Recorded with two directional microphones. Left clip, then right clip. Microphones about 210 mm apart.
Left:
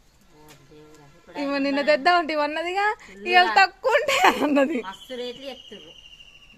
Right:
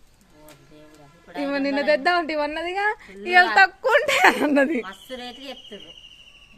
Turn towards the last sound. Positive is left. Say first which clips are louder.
# left 2 dB
turn(degrees=-35)  # may be behind; listen again after turning